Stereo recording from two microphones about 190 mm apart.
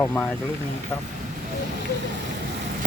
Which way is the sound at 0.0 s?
10° left (ahead or behind).